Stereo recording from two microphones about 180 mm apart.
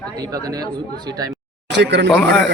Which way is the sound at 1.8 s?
75° right (ahead or behind).